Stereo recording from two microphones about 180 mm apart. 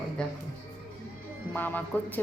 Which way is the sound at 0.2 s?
5° left (ahead or behind).